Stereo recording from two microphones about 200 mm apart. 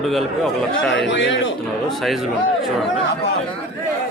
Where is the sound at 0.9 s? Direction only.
65° left (ahead or behind).